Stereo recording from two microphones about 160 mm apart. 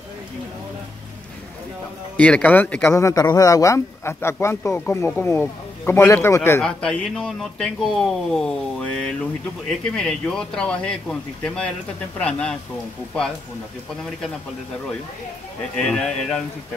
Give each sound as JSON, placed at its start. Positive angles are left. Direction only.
{"t": 2.1, "sound": "speech", "side_deg": 10}
{"t": 15.7, "sound": "speech", "side_deg": 5}